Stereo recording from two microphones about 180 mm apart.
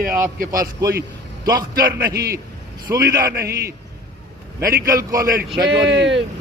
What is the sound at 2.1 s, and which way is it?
Speech, 60° right (ahead or behind).